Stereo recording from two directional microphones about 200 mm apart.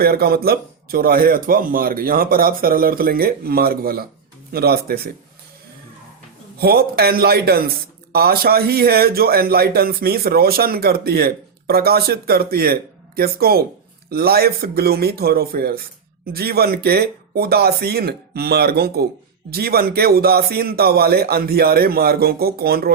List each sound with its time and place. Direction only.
0.0 s speech: 50° right (ahead or behind)
6.6 s speech: 50° right (ahead or behind)